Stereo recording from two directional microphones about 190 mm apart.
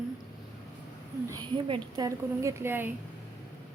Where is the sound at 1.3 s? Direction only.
25° right (ahead or behind).